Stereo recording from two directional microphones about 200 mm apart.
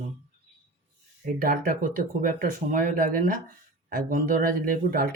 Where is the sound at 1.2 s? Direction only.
45° right (ahead or behind).